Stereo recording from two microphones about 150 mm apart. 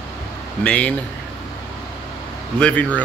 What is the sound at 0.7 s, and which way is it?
Speech, 10° left (ahead or behind).